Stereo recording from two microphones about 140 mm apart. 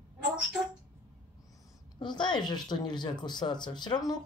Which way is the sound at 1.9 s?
30° left (ahead or behind).